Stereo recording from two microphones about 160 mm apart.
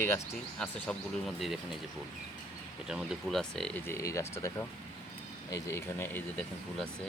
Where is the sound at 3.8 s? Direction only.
20° left (ahead or behind).